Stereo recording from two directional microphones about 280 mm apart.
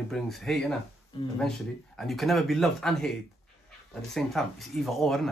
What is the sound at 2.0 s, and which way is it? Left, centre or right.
Speech, centre.